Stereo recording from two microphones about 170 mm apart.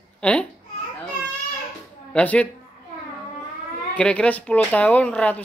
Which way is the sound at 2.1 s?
5° left (ahead or behind).